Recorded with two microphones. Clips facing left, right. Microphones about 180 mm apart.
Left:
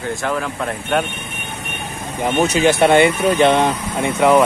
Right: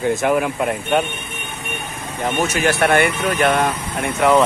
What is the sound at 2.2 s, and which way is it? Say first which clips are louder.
Speech: left 4 dB; 15° left (ahead or behind).